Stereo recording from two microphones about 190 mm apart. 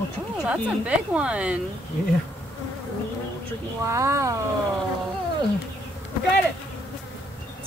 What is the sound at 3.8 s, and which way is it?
Speech, 15° right (ahead or behind).